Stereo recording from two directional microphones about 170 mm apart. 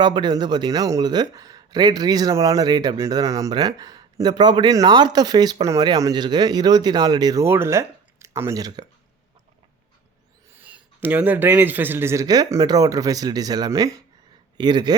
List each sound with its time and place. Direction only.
0.0 s speech: 25° right (ahead or behind)
10.5 s a sound: 10° right (ahead or behind)
11.0 s speech: 10° right (ahead or behind)